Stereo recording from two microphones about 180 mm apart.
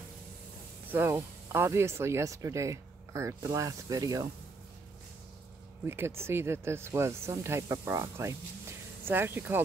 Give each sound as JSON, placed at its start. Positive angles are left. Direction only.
{"t": 0.9, "sound": "speech", "side_deg": -15}
{"t": 5.9, "sound": "speech", "side_deg": -15}